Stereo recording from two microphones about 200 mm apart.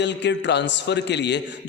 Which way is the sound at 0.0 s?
60° left (ahead or behind).